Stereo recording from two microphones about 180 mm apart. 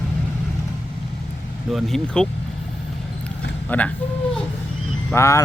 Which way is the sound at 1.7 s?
Centre (ahead or behind).